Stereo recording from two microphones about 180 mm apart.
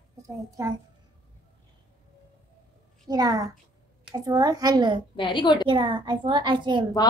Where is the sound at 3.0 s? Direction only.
20° right (ahead or behind).